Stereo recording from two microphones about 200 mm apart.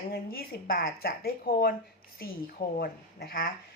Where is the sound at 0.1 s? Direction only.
50° left (ahead or behind).